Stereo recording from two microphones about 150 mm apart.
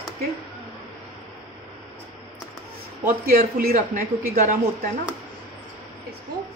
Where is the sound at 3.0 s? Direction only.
80° right; by 4.5 s 60° right (ahead or behind).